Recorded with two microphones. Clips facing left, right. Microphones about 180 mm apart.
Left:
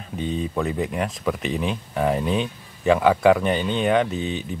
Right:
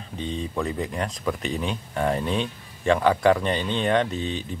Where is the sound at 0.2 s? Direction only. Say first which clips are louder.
Left 3 dB; 5° left (ahead or behind).